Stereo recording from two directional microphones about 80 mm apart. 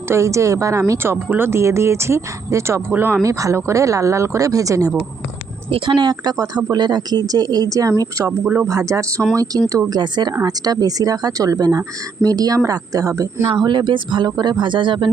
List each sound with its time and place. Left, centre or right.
0.1 s speech: right
2.9 s speech: right
3.2 s speech: right
5.8 s speech: right
6.3 s speech: right
6.7 s speech: right
9.9 s speech: right
13.6 s speech: right